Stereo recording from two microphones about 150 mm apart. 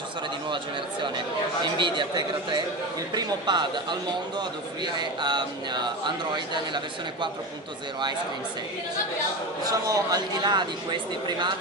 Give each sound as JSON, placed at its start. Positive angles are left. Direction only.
{"t": 1.0, "sound": "speech", "side_deg": -30}
{"t": 9.7, "sound": "speech", "side_deg": -25}